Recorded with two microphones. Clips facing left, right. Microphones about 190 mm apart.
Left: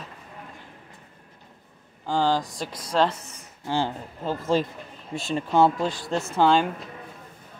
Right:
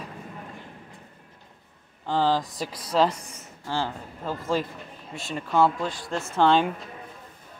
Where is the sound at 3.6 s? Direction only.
20° left (ahead or behind).